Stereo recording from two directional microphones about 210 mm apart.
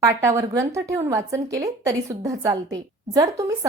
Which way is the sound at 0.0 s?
15° right (ahead or behind).